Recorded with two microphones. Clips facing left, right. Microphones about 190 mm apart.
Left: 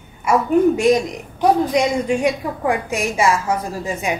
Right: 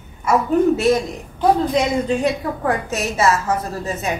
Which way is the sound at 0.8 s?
15° left (ahead or behind).